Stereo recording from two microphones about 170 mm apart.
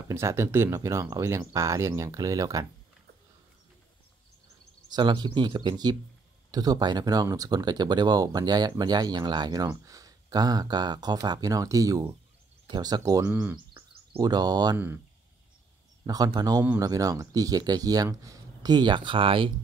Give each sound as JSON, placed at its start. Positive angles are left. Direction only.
{"t": 0.1, "sound": "speech", "side_deg": -15}
{"t": 4.8, "sound": "speech", "side_deg": -25}
{"t": 16.3, "sound": "speech", "side_deg": -25}